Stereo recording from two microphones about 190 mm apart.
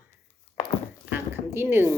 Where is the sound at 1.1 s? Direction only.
10° right (ahead or behind).